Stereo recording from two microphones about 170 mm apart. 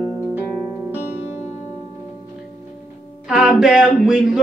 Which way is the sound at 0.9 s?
10° right (ahead or behind).